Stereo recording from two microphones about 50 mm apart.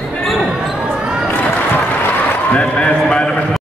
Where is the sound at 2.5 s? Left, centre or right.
Left.